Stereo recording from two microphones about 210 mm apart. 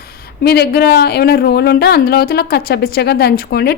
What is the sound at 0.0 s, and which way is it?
A woman's voice, 50° left (ahead or behind).